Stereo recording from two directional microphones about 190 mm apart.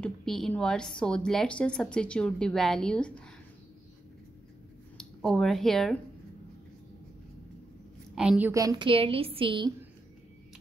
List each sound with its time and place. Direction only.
0.0 s a woman's voice: centre (ahead or behind)
4.9 s speech: 5° left (ahead or behind)
8.1 s a woman's voice: 5° right (ahead or behind); by 9.8 s 25° right (ahead or behind)